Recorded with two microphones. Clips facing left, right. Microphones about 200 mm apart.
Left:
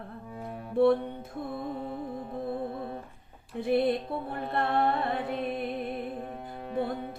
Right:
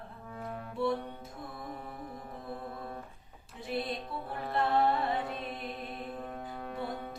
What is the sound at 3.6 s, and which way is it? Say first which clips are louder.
Music: left 10 dB; 55° left (ahead or behind).